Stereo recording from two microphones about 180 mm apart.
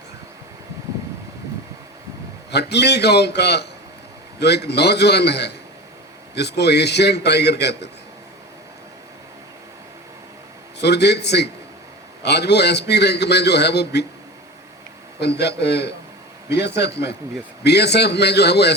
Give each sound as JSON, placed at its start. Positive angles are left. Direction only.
{"t": 2.5, "sound": "a man's voice", "side_deg": 70}
{"t": 10.8, "sound": "a man's voice", "side_deg": 65}
{"t": 15.2, "sound": "a man's voice", "side_deg": 70}